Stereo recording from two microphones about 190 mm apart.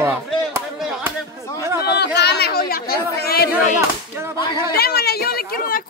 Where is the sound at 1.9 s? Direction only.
60° left (ahead or behind).